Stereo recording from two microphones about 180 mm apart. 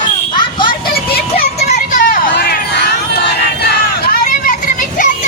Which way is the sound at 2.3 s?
65° left (ahead or behind).